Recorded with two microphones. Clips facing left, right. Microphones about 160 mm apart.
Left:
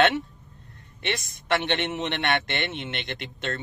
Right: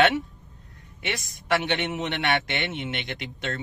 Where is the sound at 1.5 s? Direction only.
Centre (ahead or behind).